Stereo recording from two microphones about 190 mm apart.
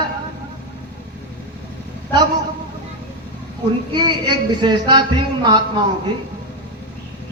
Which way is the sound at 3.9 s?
25° right (ahead or behind).